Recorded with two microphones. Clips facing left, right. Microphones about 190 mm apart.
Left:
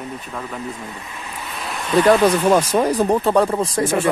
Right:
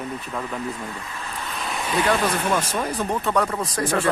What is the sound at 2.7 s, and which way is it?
Speech, 40° left (ahead or behind).